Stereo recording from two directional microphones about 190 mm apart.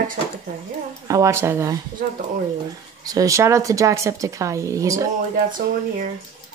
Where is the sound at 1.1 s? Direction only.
15° right (ahead or behind).